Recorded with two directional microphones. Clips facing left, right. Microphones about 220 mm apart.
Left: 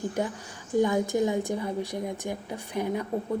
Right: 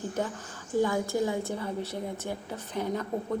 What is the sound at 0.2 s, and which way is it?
A woman's voice, 10° left (ahead or behind).